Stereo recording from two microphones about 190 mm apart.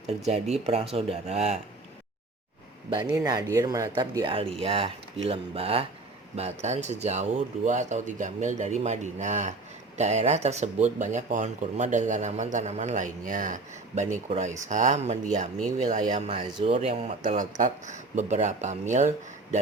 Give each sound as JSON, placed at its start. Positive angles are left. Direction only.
{"t": 0.2, "sound": "speech", "side_deg": -35}
{"t": 3.2, "sound": "speech", "side_deg": -20}